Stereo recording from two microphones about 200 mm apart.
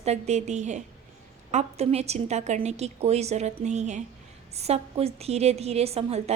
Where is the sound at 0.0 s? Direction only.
35° right (ahead or behind).